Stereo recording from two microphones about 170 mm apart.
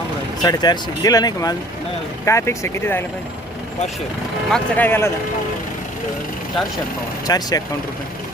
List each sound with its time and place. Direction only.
0.4 s speech: 25° left (ahead or behind)
4.5 s speech: 10° left (ahead or behind)
7.3 s speech: 20° left (ahead or behind)